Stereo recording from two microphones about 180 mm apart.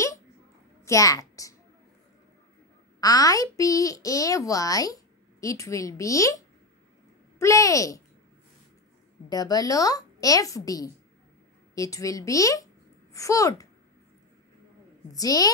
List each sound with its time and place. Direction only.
0.8 s a child's voice: 20° left (ahead or behind)
3.0 s a child's voice: 20° left (ahead or behind)
9.3 s a child's voice: 20° left (ahead or behind)
15.1 s a child's voice: 20° left (ahead or behind)